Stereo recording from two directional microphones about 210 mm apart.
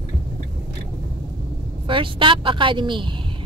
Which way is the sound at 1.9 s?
25° right (ahead or behind).